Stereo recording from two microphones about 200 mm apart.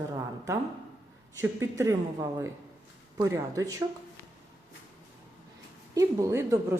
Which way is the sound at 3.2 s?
15° right (ahead or behind).